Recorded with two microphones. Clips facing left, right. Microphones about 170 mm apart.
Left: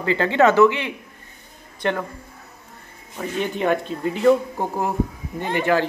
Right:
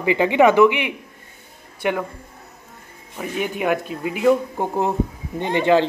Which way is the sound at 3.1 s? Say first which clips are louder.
Even; 10° right (ahead or behind).